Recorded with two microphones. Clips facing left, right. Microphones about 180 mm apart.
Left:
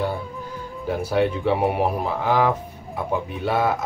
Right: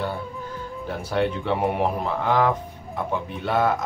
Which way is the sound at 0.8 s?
10° left (ahead or behind).